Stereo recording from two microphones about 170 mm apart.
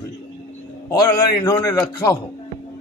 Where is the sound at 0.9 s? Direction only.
20° left (ahead or behind).